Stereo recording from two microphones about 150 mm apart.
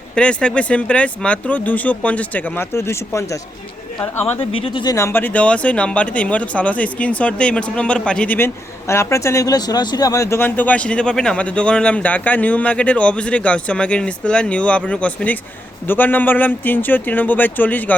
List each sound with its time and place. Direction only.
0.2 s speech: 5° left (ahead or behind)
4.5 s speech: 35° left (ahead or behind)
4.9 s speech: 15° left (ahead or behind)